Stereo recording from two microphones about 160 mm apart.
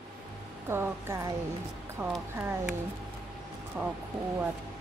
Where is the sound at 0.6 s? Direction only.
15° right (ahead or behind).